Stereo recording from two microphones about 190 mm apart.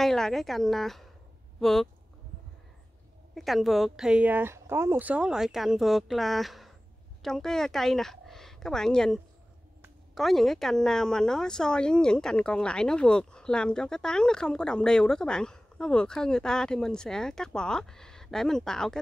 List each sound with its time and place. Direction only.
0.0 s a woman's voice: centre (ahead or behind)
3.3 s a woman's voice: centre (ahead or behind)